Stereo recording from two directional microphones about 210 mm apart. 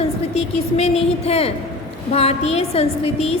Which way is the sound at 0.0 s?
30° left (ahead or behind).